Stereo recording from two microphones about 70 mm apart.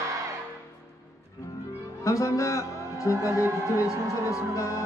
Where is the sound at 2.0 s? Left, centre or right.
Left.